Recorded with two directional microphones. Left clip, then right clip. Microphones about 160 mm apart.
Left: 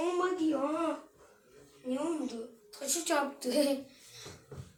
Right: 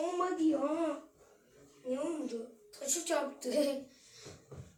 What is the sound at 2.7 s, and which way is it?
A child's voice, 15° left (ahead or behind).